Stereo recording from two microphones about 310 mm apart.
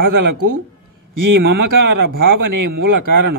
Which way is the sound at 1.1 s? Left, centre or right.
Right.